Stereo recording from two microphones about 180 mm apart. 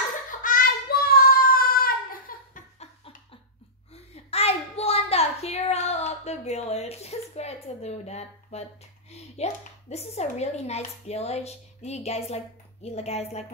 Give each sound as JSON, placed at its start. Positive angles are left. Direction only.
{"t": 0.4, "sound": "child singing", "side_deg": 50}
{"t": 2.3, "sound": "laughter", "side_deg": 50}
{"t": 3.9, "sound": "a sound", "side_deg": 35}
{"t": 9.1, "sound": "speech", "side_deg": 35}